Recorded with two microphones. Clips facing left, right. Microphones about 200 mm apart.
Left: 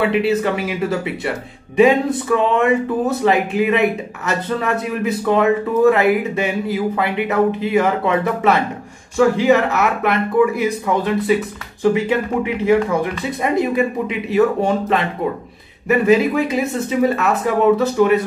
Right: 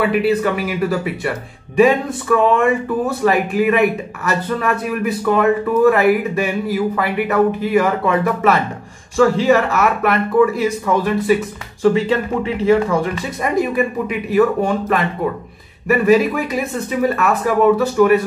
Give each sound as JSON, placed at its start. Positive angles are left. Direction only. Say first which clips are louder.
{"t": 0.0, "sound": "a man's voice", "louder": "right 1 dB", "side_deg": 25}